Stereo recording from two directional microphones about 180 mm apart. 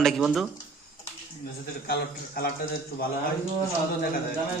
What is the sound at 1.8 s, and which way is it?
Speech, 60° left (ahead or behind).